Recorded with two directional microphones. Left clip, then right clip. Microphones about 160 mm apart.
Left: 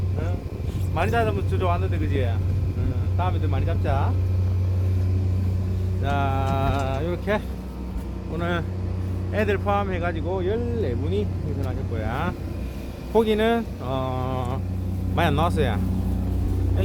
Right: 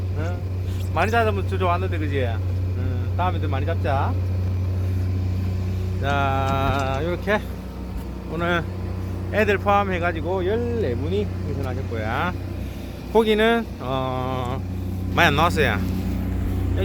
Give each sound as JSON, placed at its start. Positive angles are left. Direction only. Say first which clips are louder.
{"t": 0.9, "sound": "speech", "louder": "right 3 dB", "side_deg": -25}
{"t": 6.0, "sound": "speech", "louder": "right 3 dB", "side_deg": 0}
{"t": 8.4, "sound": "speech", "louder": "right 5 dB", "side_deg": -15}
{"t": 9.3, "sound": "speech", "louder": "right 4 dB", "side_deg": -30}